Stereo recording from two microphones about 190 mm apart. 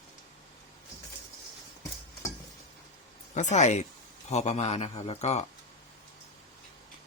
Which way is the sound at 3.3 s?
35° left (ahead or behind).